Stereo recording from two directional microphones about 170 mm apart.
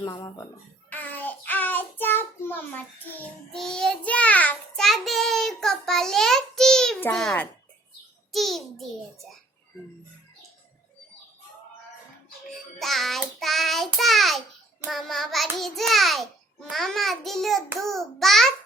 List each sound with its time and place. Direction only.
0.0 s speech: 20° left (ahead or behind)
0.9 s child singing: 10° left (ahead or behind)
12.8 s child singing: centre (ahead or behind)